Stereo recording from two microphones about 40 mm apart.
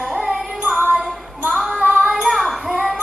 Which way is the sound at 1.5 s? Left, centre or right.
Centre.